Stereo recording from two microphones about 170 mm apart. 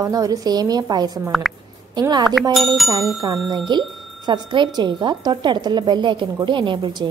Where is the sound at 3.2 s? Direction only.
25° right (ahead or behind).